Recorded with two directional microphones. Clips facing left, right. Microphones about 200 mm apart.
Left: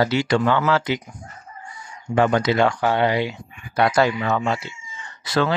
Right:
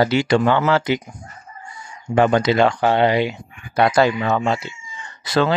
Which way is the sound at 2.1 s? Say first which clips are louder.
Right 3 dB; 25° right (ahead or behind).